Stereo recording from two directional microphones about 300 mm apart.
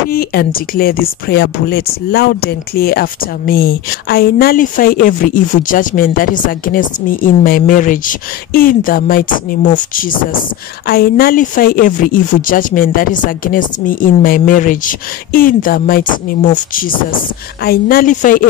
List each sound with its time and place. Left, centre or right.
0.1 s speech: left